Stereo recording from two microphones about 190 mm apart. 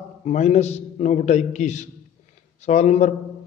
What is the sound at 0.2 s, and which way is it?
A man's voice, 35° left (ahead or behind).